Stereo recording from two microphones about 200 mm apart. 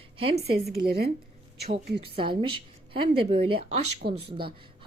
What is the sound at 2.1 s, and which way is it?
A woman's voice, 25° right (ahead or behind).